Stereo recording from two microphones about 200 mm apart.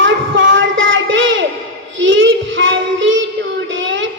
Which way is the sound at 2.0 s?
70° right (ahead or behind).